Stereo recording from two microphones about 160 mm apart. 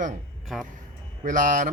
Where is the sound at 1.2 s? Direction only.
55° right (ahead or behind).